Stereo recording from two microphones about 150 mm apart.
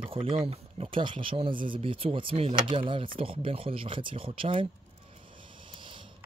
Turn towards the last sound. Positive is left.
turn(degrees=-35)  # may be behind; listen again after turning